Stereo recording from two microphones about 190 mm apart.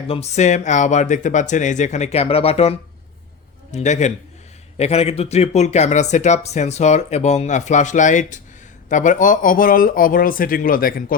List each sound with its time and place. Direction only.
0.1 s speech: 35° left (ahead or behind)